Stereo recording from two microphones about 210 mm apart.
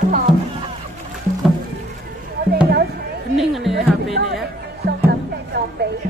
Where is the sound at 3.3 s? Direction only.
Centre (ahead or behind).